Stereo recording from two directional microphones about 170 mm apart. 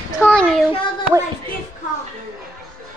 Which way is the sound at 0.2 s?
5° left (ahead or behind).